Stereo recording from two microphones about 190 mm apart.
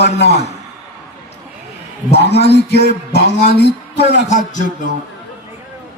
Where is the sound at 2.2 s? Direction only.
60° left (ahead or behind).